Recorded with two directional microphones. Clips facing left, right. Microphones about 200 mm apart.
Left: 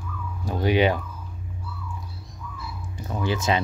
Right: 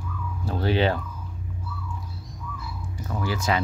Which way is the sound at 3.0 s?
20° left (ahead or behind).